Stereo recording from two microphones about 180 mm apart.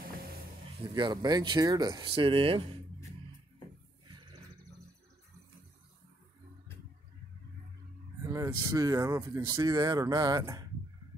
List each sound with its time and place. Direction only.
0.9 s speech: 25° right (ahead or behind)
8.2 s speech: 15° right (ahead or behind)